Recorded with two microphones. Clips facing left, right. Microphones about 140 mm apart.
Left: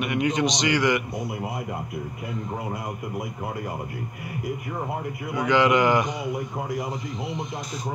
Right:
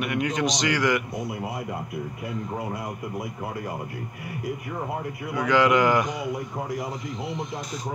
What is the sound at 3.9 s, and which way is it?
A man's voice, 30° left (ahead or behind).